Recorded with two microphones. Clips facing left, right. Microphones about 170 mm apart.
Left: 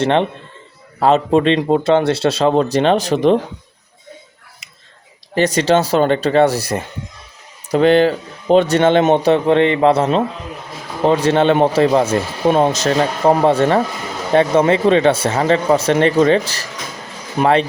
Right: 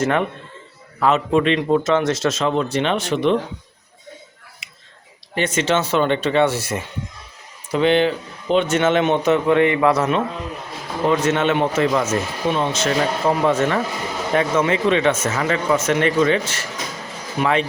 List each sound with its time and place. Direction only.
0.0 s speech: 25° left (ahead or behind)
4.6 s whispering: 40° left (ahead or behind)
5.3 s speech: 35° left (ahead or behind)